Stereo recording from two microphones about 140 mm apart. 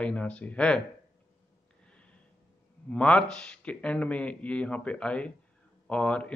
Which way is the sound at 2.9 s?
10° left (ahead or behind).